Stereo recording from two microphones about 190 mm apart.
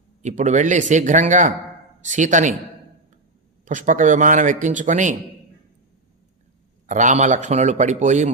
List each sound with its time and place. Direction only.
0.2 s a man's voice: 40° right (ahead or behind)
3.7 s a man's voice: 45° right (ahead or behind)
6.8 s a man's voice: 40° right (ahead or behind)